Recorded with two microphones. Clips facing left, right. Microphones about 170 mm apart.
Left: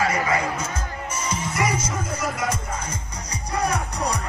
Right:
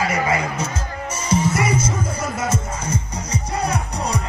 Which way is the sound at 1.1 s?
25° right (ahead or behind).